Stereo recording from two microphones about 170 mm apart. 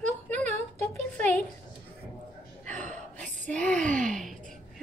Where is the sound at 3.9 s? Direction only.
50° right (ahead or behind).